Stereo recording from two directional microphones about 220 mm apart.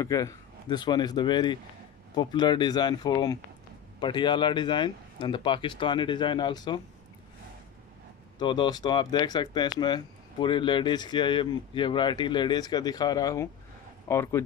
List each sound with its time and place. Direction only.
0.0 s speech: 15° left (ahead or behind)
8.4 s speech: 20° left (ahead or behind)